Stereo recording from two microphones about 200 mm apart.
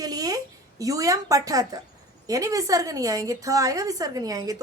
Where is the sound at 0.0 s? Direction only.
20° right (ahead or behind).